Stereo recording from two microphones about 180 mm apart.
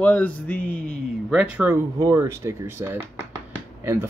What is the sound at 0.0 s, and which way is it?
Mantra, 10° left (ahead or behind).